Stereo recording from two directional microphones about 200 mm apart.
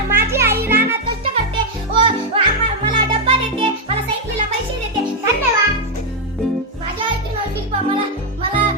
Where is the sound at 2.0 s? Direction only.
25° right (ahead or behind).